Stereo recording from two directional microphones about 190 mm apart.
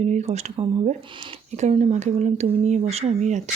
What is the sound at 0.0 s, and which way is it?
Speech, 35° right (ahead or behind).